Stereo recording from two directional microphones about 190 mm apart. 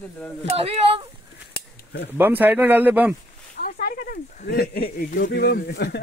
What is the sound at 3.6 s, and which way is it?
Speech, 45° left (ahead or behind).